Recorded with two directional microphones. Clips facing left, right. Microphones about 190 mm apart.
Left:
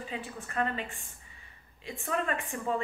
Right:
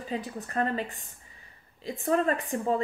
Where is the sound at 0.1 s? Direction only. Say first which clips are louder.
Right 8 dB; 40° right (ahead or behind).